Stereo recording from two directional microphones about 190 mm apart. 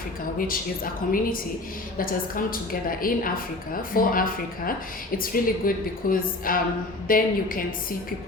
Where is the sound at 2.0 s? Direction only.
50° left (ahead or behind).